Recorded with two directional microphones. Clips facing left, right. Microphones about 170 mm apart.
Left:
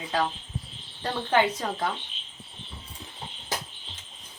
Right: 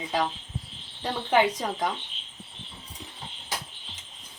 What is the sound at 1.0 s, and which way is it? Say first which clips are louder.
Speech: right 1 dB; 10° right (ahead or behind).